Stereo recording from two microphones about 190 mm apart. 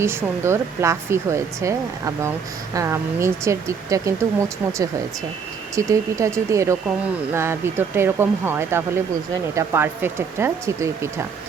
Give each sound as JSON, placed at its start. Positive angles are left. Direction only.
{"t": 0.0, "sound": "speech", "side_deg": -15}